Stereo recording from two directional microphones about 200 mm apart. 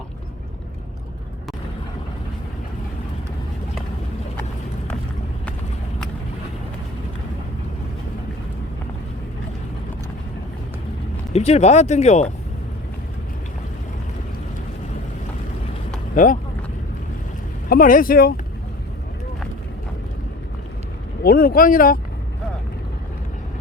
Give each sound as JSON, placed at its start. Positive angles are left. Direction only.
{"t": 11.3, "sound": "speech", "side_deg": 30}
{"t": 16.1, "sound": "speech", "side_deg": 40}
{"t": 17.7, "sound": "speech", "side_deg": 45}
{"t": 21.2, "sound": "speech", "side_deg": 45}